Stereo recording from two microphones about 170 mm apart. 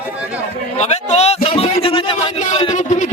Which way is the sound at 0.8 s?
40° left (ahead or behind).